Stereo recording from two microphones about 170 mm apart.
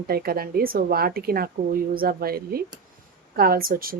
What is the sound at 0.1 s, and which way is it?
A woman's voice, 60° right (ahead or behind).